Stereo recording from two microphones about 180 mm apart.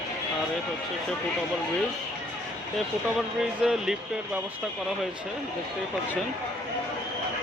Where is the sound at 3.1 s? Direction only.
5° right (ahead or behind).